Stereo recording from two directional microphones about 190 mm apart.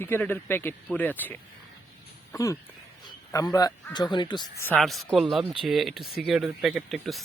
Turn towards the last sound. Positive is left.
turn(degrees=0)  # may be behind; listen again after turning